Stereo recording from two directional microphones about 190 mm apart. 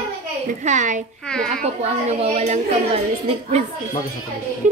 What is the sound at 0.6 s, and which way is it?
A woman's voice, 40° right (ahead or behind).